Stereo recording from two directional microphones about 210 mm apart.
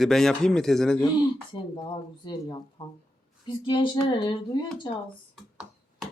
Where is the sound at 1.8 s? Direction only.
25° left (ahead or behind).